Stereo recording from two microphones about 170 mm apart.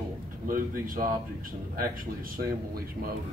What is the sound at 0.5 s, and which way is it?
Speech, 55° right (ahead or behind).